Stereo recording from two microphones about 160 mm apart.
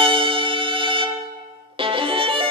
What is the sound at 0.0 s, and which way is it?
Music, 35° right (ahead or behind).